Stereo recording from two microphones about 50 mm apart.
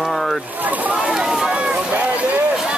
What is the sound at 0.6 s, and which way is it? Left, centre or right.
Speech, right.